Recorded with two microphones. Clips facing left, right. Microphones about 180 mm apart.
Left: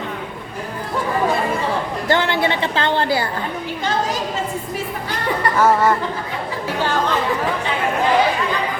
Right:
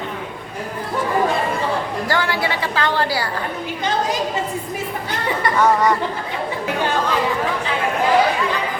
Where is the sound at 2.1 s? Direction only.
25° left (ahead or behind).